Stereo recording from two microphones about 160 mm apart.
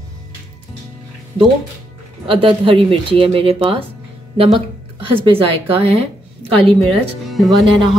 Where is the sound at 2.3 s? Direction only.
35° right (ahead or behind).